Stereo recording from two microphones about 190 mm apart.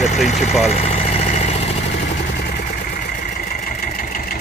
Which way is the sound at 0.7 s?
35° left (ahead or behind).